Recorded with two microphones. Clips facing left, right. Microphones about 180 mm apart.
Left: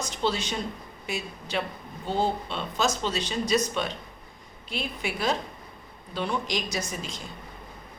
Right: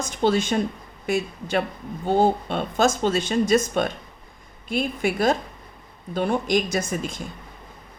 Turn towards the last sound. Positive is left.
turn(degrees=-50)  # may be behind; listen again after turning